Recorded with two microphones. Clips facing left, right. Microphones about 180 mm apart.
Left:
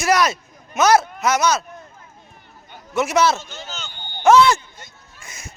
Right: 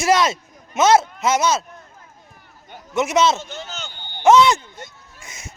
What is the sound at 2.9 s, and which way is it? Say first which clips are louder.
A man's voice: even; 20° right (ahead or behind).